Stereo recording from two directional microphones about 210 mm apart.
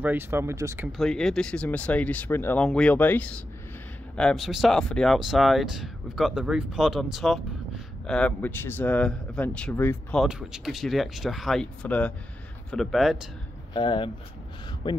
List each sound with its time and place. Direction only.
0.0 s speech: 10° right (ahead or behind)
0.9 s speech: centre (ahead or behind)
10.2 s speech: centre (ahead or behind)
13.7 s speech: 20° left (ahead or behind)